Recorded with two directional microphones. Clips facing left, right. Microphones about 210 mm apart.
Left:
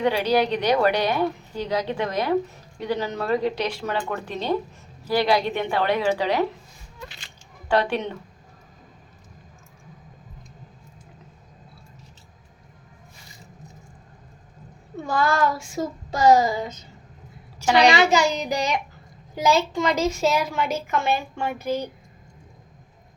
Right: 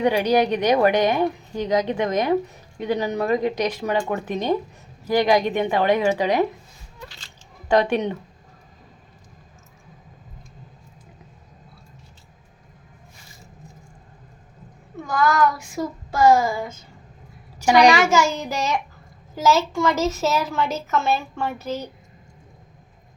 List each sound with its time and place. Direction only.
0.0 s a woman's voice: 15° right (ahead or behind)
7.7 s a woman's voice: 15° right (ahead or behind)
15.1 s child singing: 30° left (ahead or behind)
17.9 s a woman's voice: 15° left (ahead or behind)